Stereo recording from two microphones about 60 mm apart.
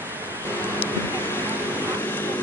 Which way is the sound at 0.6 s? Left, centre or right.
Left.